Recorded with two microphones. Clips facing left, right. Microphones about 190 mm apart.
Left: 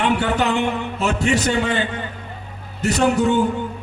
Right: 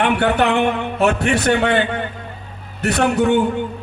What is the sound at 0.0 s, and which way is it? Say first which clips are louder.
A man's voice: right 3 dB; 60° right (ahead or behind).